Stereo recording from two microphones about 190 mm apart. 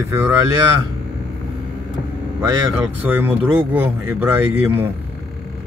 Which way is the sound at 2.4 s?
15° right (ahead or behind).